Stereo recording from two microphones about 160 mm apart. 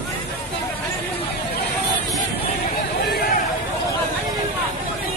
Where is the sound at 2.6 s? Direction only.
80° left.